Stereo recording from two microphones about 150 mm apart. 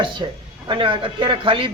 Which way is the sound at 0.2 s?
30° right (ahead or behind).